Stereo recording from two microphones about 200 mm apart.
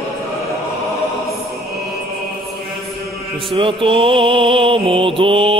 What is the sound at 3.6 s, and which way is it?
Mantra, 25° right (ahead or behind).